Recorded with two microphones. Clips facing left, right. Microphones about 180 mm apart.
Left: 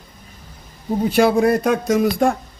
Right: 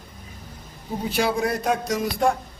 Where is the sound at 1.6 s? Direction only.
60° left (ahead or behind).